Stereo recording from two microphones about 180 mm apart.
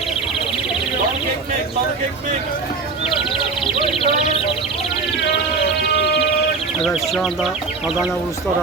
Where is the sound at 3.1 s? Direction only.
30° left (ahead or behind).